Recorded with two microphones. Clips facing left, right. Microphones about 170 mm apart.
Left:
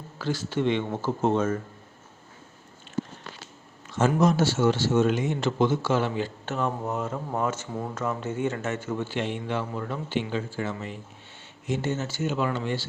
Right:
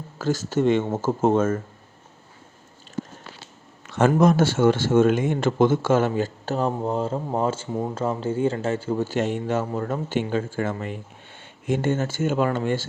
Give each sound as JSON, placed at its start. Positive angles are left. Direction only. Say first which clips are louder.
{"t": 0.2, "sound": "speech", "louder": "right 5 dB", "side_deg": -45}
{"t": 3.8, "sound": "speech", "louder": "right 4 dB", "side_deg": -60}